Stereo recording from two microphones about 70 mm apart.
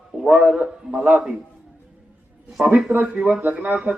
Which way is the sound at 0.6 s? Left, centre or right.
Centre.